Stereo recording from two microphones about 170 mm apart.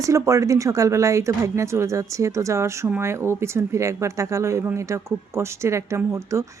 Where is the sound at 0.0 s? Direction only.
20° right (ahead or behind).